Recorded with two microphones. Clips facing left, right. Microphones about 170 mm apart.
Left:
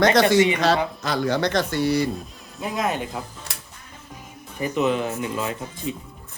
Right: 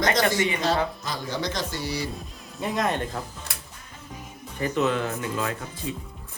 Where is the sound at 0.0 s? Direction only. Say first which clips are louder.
Left 7 dB; 70° left (ahead or behind).